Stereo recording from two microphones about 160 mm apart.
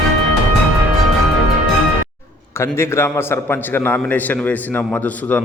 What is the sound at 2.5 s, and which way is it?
A man's voice, 15° left (ahead or behind).